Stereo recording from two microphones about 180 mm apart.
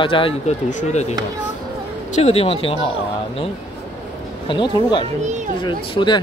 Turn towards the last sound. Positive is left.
turn(degrees=25)  # may be behind; listen again after turning